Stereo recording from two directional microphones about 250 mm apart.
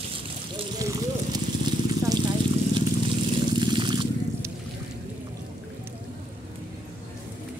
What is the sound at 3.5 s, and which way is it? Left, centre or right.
Trickle, centre.